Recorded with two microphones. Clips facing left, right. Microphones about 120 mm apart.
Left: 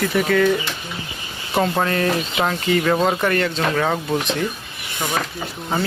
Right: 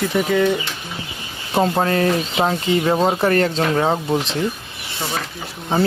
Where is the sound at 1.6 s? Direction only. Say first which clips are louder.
Right 2 dB; 30° right (ahead or behind).